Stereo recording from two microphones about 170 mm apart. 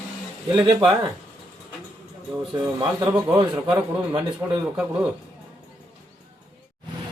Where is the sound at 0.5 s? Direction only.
30° right (ahead or behind).